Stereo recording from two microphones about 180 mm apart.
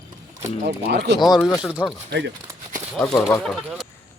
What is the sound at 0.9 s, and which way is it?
Speech, 70° right (ahead or behind).